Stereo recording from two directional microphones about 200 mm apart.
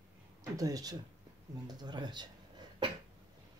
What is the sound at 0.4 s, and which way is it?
Speech, 15° right (ahead or behind).